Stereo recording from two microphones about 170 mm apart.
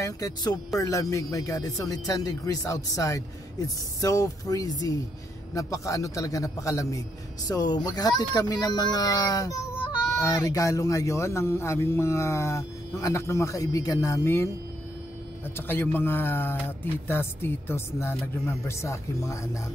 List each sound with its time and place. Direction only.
0.0 s speech: 20° left (ahead or behind)